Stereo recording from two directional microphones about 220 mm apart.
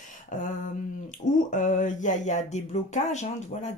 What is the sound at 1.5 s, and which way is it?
Speech, 35° left (ahead or behind).